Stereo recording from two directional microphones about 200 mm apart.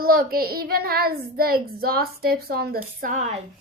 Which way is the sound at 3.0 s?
35° right (ahead or behind).